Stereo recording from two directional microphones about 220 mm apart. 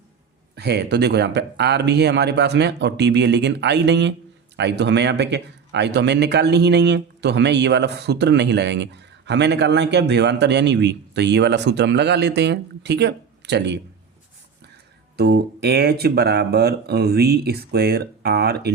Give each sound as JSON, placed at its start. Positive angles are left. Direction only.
{"t": 0.5, "sound": "speech", "side_deg": -50}
{"t": 15.1, "sound": "speech", "side_deg": -45}